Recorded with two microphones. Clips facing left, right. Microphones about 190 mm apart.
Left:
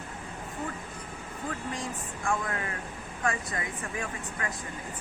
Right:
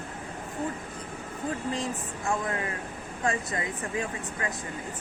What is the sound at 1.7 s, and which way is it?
Speech, 20° right (ahead or behind).